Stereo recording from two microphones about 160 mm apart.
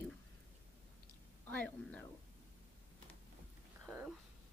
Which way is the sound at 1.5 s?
10° left (ahead or behind).